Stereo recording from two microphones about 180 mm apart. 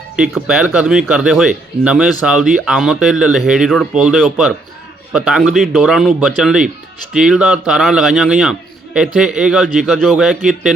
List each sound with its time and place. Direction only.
0.2 s a man's voice: 5° right (ahead or behind)